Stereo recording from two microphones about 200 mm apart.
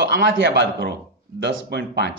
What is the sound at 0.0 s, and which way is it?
A man's voice, 60° right (ahead or behind).